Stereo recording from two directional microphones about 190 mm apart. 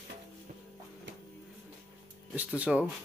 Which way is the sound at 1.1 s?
70° right (ahead or behind).